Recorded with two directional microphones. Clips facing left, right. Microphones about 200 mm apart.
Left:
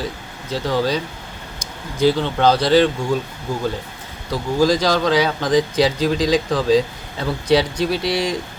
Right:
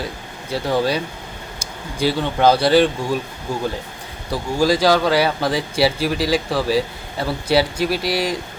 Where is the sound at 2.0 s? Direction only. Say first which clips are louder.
Left 1 dB; 10° right (ahead or behind).